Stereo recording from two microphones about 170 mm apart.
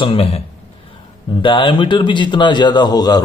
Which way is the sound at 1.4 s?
30° left (ahead or behind).